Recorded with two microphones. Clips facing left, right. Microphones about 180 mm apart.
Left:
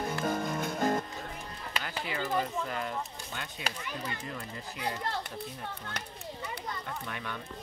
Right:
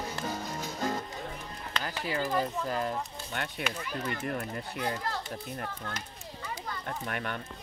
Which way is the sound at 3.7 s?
35° left (ahead or behind).